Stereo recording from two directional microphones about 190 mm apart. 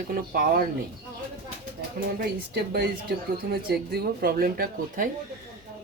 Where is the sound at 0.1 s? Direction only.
50° right (ahead or behind).